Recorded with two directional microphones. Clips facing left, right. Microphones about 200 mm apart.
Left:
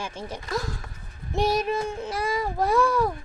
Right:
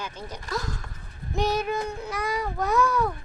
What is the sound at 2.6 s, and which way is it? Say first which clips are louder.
Speech: left 2 dB; 30° left (ahead or behind).